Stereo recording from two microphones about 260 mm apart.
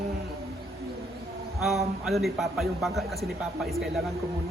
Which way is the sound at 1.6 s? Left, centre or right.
Centre.